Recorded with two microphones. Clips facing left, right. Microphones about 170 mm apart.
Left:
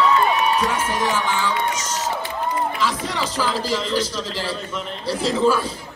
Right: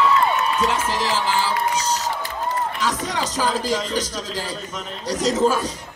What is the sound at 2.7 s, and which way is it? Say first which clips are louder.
Speech: even; 45° right (ahead or behind).